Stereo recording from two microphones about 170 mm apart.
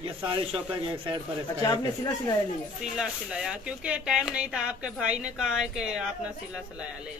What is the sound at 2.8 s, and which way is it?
Speech, 5° right (ahead or behind).